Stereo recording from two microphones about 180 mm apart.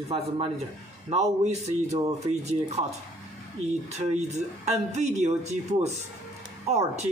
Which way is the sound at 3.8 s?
40° right (ahead or behind).